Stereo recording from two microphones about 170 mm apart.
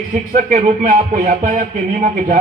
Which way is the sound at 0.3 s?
50° right (ahead or behind).